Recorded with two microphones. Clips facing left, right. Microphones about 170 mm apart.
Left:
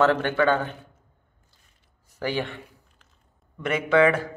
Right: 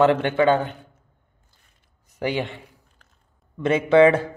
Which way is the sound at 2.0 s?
20° right (ahead or behind).